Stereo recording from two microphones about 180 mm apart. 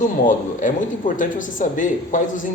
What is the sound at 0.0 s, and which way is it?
Speech, 45° left (ahead or behind).